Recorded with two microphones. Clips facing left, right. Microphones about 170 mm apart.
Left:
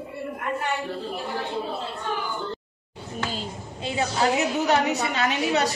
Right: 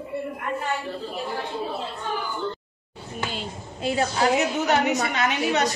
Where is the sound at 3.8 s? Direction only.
20° left (ahead or behind).